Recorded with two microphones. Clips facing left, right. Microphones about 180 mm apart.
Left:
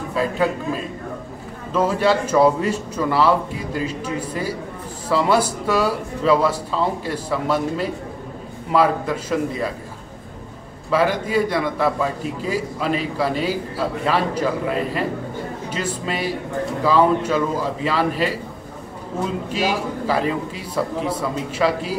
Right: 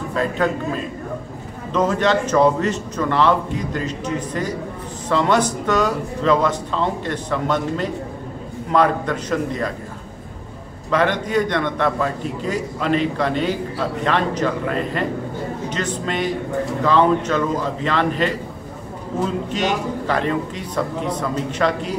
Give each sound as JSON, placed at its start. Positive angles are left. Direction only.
{"t": 0.1, "sound": "a man's voice", "side_deg": 10}
{"t": 1.7, "sound": "a man's voice", "side_deg": 5}
{"t": 10.9, "sound": "a man's voice", "side_deg": 5}
{"t": 19.5, "sound": "a man's voice", "side_deg": 5}